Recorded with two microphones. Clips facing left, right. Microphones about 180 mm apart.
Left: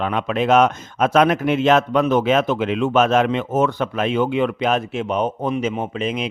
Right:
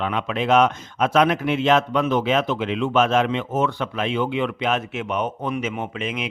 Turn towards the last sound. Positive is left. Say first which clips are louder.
# left 4 dB
turn(degrees=35)  # may be behind; listen again after turning